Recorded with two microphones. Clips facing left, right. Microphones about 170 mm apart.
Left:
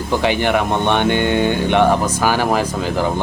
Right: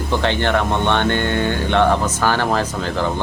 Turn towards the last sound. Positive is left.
turn(degrees=10)  # may be behind; listen again after turning